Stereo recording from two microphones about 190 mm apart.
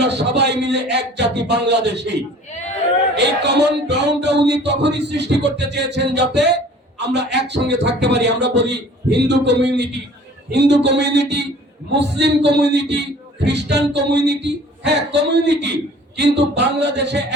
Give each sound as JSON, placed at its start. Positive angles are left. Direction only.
{"t": 0.0, "sound": "speech", "side_deg": -65}
{"t": 3.2, "sound": "speech", "side_deg": -65}
{"t": 12.5, "sound": "speech", "side_deg": -65}